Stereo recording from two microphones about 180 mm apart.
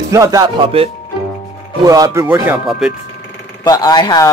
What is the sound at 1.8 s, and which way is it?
Speech, 20° right (ahead or behind).